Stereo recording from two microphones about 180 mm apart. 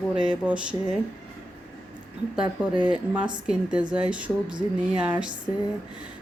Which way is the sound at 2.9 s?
5° right (ahead or behind).